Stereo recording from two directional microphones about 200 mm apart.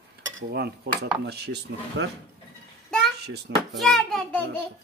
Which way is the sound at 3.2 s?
55° right (ahead or behind).